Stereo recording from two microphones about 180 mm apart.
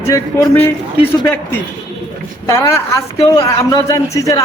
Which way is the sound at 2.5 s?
15° left (ahead or behind).